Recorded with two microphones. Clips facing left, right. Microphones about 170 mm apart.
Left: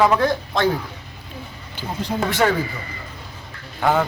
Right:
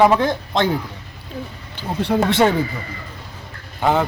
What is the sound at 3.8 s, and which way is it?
Speech, 20° right (ahead or behind).